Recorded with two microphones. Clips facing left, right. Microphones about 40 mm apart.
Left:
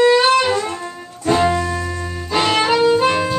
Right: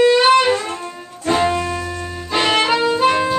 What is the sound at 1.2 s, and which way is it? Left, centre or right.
Music, centre.